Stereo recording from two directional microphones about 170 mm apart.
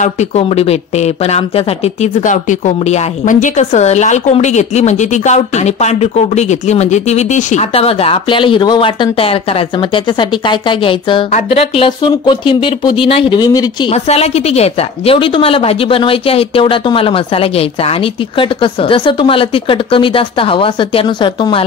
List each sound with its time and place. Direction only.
0.0 s speech: 40° left (ahead or behind); by 13.9 s 25° left (ahead or behind)
13.9 s speech: 40° left (ahead or behind)